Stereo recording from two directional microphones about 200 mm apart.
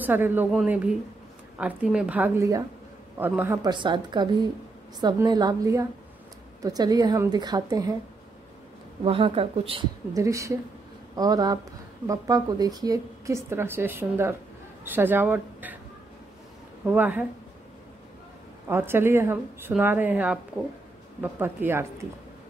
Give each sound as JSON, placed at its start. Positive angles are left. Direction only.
{"t": 0.0, "sound": "a woman's voice", "side_deg": -10}
{"t": 3.6, "sound": "a woman's voice", "side_deg": -20}
{"t": 9.0, "sound": "a woman's voice", "side_deg": -30}
{"t": 10.1, "sound": "a woman's voice", "side_deg": -15}
{"t": 16.8, "sound": "a woman's voice", "side_deg": -10}
{"t": 18.7, "sound": "a woman's voice", "side_deg": -10}